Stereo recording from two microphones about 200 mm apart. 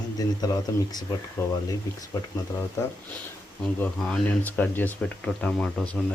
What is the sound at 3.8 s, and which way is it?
Speech, 10° left (ahead or behind).